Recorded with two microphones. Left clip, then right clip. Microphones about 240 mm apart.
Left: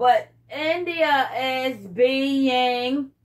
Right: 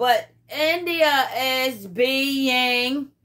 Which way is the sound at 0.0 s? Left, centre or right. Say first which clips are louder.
Left 1 dB; right.